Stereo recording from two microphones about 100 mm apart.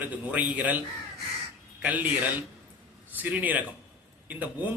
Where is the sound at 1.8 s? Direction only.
15° right (ahead or behind).